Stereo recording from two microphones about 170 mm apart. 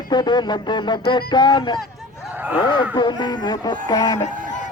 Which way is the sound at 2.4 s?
10° right (ahead or behind).